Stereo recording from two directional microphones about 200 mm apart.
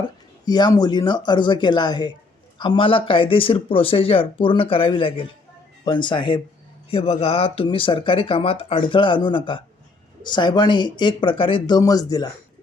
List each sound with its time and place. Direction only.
0.4 s speech: 20° left (ahead or behind)